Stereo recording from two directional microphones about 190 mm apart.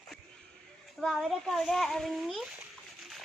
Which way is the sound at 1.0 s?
Centre (ahead or behind).